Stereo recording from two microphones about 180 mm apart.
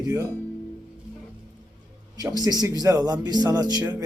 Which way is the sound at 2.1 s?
20° right (ahead or behind).